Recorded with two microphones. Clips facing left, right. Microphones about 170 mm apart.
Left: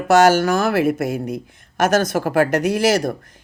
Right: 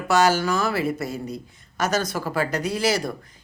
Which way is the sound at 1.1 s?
90° left.